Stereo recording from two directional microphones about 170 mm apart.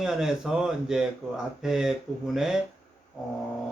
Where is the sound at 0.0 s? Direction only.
5° right (ahead or behind).